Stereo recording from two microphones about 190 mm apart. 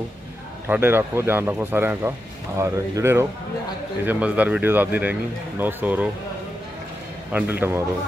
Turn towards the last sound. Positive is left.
turn(degrees=-10)  # may be behind; listen again after turning